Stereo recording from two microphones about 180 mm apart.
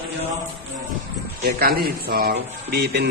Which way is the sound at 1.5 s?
60° right (ahead or behind).